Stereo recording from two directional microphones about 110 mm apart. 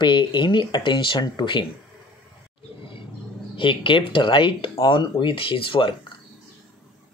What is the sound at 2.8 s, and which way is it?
Vehicle, 50° left (ahead or behind).